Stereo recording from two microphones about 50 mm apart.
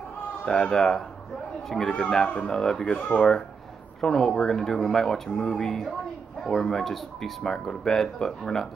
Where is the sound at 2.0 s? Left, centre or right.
Centre.